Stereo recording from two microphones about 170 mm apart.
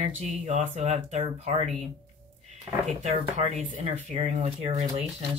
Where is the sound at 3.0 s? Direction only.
40° right (ahead or behind).